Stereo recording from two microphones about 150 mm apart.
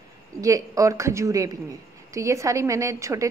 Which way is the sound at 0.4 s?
20° right (ahead or behind).